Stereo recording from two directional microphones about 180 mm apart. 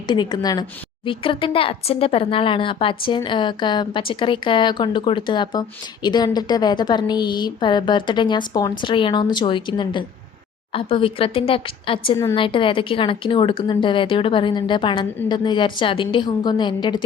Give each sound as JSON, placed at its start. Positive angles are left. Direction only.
{"t": 0.1, "sound": "a woman's voice", "side_deg": 25}